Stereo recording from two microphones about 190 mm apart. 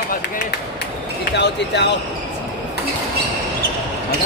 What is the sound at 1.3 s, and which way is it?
Speech, 65° left (ahead or behind).